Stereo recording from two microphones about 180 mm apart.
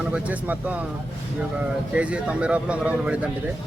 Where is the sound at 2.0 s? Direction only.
5° right (ahead or behind).